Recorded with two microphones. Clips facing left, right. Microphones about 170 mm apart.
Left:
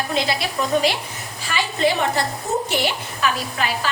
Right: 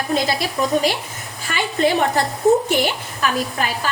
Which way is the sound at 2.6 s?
45° right (ahead or behind).